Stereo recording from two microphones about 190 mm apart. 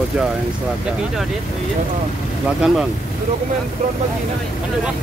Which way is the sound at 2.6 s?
Centre (ahead or behind).